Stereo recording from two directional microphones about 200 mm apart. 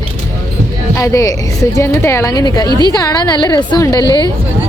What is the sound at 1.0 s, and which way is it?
A woman's voice, 15° left (ahead or behind).